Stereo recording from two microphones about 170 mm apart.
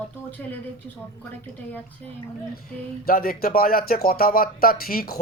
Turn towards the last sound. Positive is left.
turn(degrees=60)  # may be behind; listen again after turning